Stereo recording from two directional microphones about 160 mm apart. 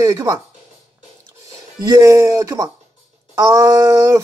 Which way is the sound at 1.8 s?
20° right (ahead or behind).